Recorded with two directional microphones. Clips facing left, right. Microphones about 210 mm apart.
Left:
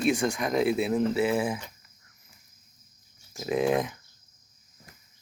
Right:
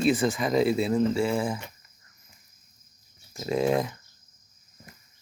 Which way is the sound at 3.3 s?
5° left (ahead or behind).